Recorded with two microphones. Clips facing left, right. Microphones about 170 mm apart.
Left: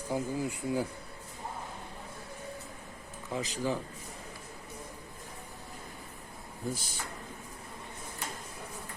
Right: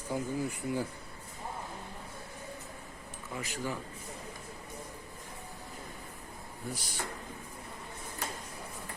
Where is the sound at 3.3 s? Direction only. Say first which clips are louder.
Left 5 dB; 20° left (ahead or behind).